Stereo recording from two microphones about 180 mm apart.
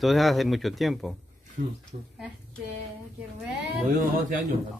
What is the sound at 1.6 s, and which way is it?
Speech, 40° right (ahead or behind).